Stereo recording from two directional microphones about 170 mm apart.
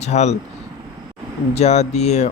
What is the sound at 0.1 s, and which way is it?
Speech, 40° left (ahead or behind).